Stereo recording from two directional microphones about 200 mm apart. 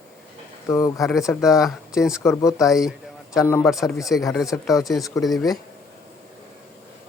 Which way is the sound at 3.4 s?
15° left (ahead or behind).